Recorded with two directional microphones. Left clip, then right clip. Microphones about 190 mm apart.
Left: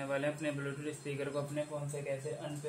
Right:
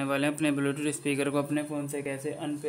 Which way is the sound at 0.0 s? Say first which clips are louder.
Right 7 dB; 45° right (ahead or behind).